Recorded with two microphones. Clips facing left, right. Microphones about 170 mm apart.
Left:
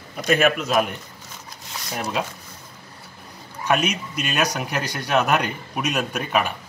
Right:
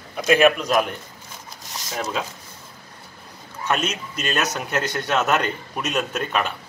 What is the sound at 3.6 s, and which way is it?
Speech, 15° left (ahead or behind).